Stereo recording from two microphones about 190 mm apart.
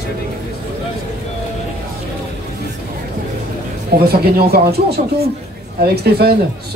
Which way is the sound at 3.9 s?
55° right (ahead or behind).